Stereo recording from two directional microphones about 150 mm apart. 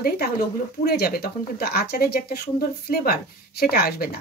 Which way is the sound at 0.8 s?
90° left.